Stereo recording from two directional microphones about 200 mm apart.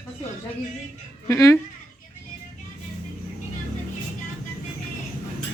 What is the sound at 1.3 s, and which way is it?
Speech, 15° left (ahead or behind).